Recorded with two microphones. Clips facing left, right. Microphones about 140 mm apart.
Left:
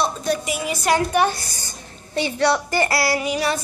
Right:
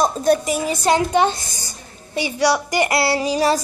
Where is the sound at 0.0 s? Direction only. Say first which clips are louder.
Right 5 dB; 45° right (ahead or behind).